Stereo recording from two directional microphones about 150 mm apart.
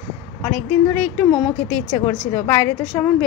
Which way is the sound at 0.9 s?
10° left (ahead or behind).